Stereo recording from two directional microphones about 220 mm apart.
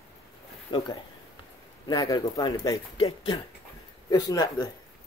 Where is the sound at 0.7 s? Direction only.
20° left (ahead or behind).